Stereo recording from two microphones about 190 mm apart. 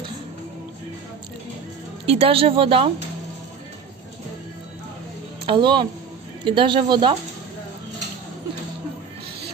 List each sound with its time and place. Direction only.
2.0 s speech: 30° right (ahead or behind)
5.5 s speech: 25° right (ahead or behind)